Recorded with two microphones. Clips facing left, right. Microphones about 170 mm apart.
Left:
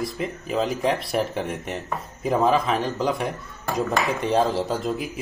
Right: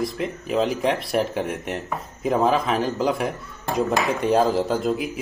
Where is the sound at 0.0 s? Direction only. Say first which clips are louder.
Right 2 dB; centre (ahead or behind).